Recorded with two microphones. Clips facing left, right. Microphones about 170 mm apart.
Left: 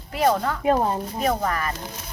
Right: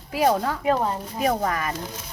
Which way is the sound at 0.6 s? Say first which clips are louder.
Left 4 dB; 20° left (ahead or behind).